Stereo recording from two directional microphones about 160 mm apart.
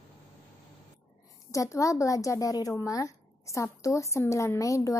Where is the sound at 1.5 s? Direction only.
20° left (ahead or behind).